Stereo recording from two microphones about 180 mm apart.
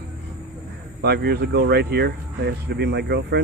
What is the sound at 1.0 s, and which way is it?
Speech, 65° right (ahead or behind).